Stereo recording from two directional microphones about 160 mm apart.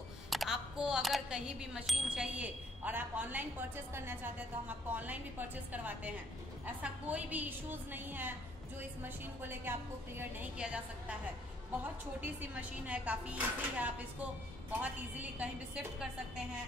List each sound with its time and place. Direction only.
0.3 s speech: centre (ahead or behind)
6.6 s speech: 10° right (ahead or behind)